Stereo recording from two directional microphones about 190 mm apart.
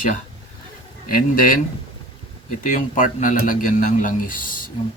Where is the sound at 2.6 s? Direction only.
45° left (ahead or behind).